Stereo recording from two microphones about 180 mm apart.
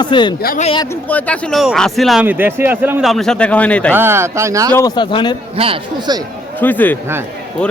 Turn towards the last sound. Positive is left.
turn(degrees=10)  # may be behind; listen again after turning